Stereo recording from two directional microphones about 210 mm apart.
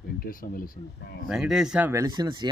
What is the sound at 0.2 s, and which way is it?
Speech, 45° left (ahead or behind).